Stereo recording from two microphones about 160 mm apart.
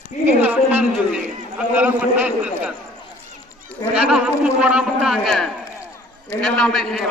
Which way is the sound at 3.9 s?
5° right (ahead or behind).